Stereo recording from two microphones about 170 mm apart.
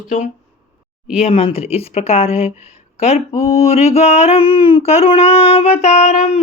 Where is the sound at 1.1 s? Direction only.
35° left (ahead or behind).